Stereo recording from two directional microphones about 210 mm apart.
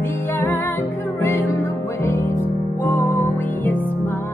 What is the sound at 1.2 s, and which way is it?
Music, 15° left (ahead or behind).